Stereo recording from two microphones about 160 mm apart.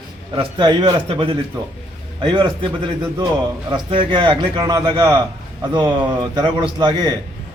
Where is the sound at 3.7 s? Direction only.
30° right (ahead or behind).